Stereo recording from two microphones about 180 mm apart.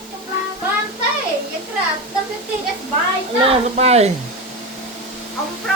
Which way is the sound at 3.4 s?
35° right (ahead or behind).